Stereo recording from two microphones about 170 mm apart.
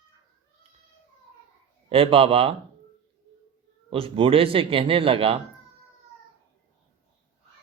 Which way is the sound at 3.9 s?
30° right (ahead or behind).